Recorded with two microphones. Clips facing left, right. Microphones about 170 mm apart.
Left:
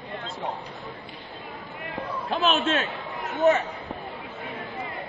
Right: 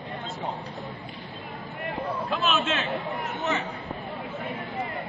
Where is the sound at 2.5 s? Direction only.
45° left (ahead or behind).